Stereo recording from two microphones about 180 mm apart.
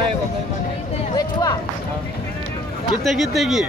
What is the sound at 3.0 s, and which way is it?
Speech, centre (ahead or behind).